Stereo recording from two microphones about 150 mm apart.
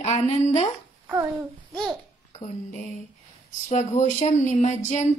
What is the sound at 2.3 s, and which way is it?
Speech, 55° left (ahead or behind).